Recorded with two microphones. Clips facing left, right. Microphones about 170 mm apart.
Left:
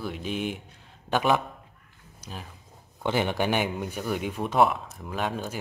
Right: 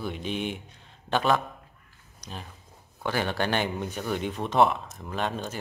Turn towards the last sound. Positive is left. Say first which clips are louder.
# even
turn(degrees=10)  # may be behind; listen again after turning